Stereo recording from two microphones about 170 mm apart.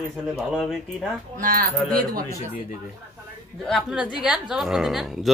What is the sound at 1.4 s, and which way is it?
Speech, 55° right (ahead or behind).